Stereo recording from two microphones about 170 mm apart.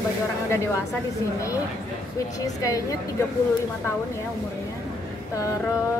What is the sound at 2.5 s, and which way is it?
Speech, 20° left (ahead or behind).